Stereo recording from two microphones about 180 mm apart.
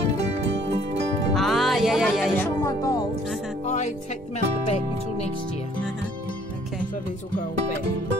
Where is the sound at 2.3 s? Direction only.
15° left (ahead or behind).